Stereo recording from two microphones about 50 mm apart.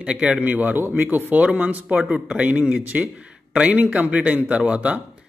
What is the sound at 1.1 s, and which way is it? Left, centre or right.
Speech, right.